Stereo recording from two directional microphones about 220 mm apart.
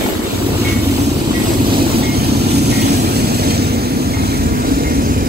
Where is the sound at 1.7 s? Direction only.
45° right (ahead or behind).